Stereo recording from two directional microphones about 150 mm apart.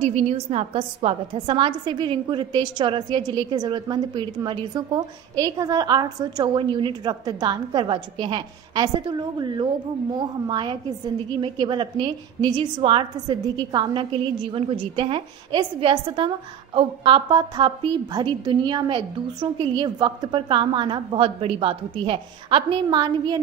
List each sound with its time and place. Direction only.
0.0 s a woman's voice: 45° right (ahead or behind); by 23.4 s 30° right (ahead or behind)